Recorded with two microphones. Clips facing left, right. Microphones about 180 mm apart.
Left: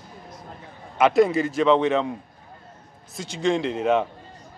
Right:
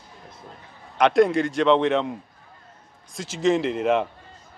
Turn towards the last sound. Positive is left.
turn(degrees=0)  # may be behind; listen again after turning